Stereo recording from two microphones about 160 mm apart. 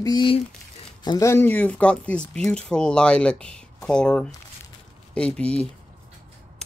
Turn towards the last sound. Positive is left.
turn(degrees=5)  # may be behind; listen again after turning